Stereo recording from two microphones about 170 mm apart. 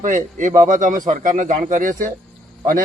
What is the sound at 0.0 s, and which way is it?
A man's voice, 50° right (ahead or behind).